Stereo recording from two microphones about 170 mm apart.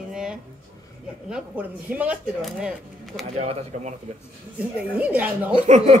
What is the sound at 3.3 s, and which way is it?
Speech, 40° right (ahead or behind).